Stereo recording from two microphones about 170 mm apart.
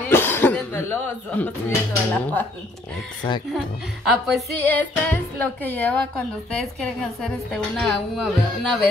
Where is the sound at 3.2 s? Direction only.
25° left (ahead or behind).